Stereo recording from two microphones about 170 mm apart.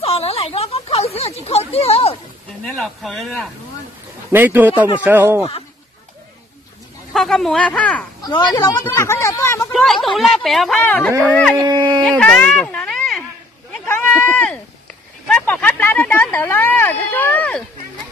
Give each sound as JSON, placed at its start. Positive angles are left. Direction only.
{"t": 0.0, "sound": "a sound", "side_deg": 35}
{"t": 2.6, "sound": "speech", "side_deg": 0}
{"t": 4.3, "sound": "speech", "side_deg": -10}
{"t": 7.1, "sound": "speech", "side_deg": 5}
{"t": 8.2, "sound": "speech", "side_deg": 25}
{"t": 9.7, "sound": "speech", "side_deg": 0}
{"t": 11.5, "sound": "speech", "side_deg": -25}
{"t": 12.0, "sound": "speech", "side_deg": 5}
{"t": 13.7, "sound": "a sound", "side_deg": 10}
{"t": 15.2, "sound": "speech", "side_deg": 5}